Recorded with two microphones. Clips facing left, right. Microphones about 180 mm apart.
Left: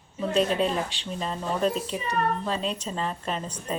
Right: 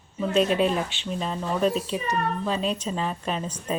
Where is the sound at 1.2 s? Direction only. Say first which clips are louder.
Right 2 dB; 5° right (ahead or behind).